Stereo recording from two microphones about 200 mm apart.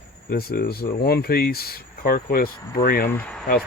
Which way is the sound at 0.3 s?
50° left (ahead or behind).